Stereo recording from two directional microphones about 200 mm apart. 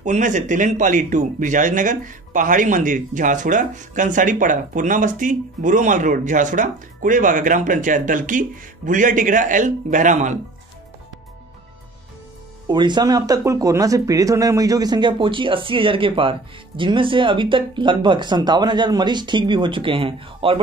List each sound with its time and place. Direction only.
0.0 s speech: 40° right (ahead or behind)
12.6 s speech: 20° right (ahead or behind)